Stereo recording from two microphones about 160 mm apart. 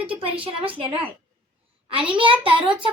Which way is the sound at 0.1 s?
35° right (ahead or behind).